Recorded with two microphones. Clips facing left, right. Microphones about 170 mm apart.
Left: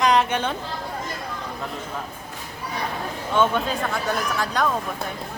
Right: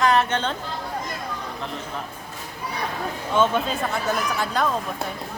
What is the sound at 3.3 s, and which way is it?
Speech, centre (ahead or behind).